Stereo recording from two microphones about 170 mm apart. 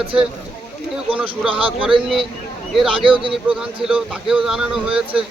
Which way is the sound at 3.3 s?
5° right (ahead or behind).